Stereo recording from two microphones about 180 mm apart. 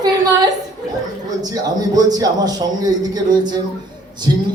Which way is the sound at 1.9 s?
20° right (ahead or behind).